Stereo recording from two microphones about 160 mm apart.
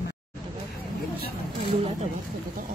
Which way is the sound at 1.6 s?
40° right (ahead or behind).